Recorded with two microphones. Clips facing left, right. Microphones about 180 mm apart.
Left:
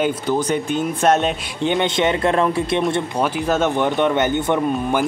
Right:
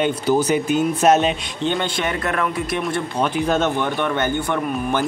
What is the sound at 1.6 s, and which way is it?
Speech, 20° left (ahead or behind).